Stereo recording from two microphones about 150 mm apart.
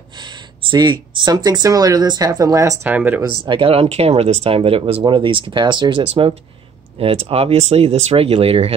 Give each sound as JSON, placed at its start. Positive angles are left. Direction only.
{"t": 0.2, "sound": "speech", "side_deg": -30}
{"t": 3.2, "sound": "speech", "side_deg": -35}